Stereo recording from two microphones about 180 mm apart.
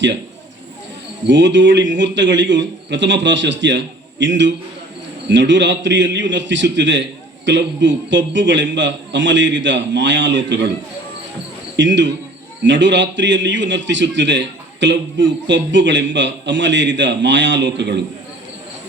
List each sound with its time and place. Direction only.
1.3 s a man's voice: 80° right
11.8 s a man's voice: 85° right